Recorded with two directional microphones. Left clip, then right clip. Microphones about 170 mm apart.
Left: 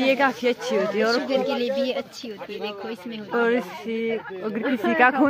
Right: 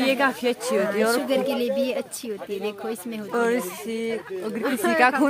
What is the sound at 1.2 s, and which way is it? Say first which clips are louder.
Speech: even; 65° right (ahead or behind).